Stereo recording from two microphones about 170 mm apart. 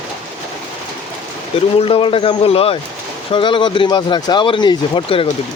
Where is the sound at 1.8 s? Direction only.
30° left (ahead or behind).